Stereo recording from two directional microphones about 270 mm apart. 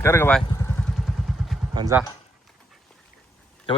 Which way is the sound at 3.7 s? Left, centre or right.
Centre.